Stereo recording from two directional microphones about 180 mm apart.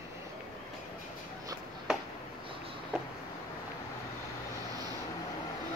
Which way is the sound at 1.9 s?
5° right (ahead or behind).